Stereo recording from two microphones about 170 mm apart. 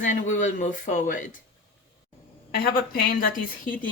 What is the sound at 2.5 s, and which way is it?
A woman's voice, 65° left (ahead or behind).